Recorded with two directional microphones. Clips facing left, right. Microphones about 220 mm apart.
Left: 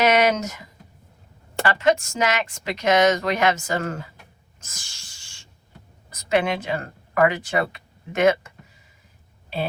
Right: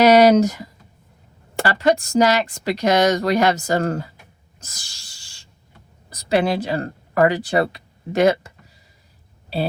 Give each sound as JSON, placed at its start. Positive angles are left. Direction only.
{"t": 0.0, "sound": "speech", "side_deg": -35}
{"t": 4.6, "sound": "cat", "side_deg": -35}
{"t": 6.1, "sound": "speech", "side_deg": -35}